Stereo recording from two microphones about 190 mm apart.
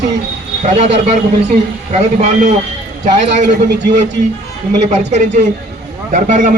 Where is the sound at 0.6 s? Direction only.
35° right (ahead or behind).